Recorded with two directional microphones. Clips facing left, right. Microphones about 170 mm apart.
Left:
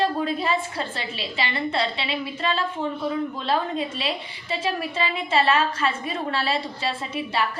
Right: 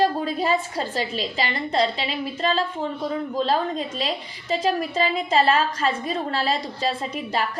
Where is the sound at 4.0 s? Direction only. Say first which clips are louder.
Right 1 dB; 40° right (ahead or behind).